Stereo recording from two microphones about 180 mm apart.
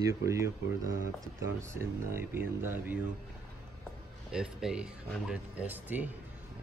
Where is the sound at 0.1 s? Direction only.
15° right (ahead or behind).